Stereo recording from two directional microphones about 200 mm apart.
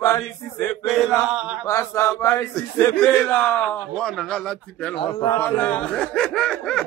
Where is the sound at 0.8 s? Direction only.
Centre (ahead or behind).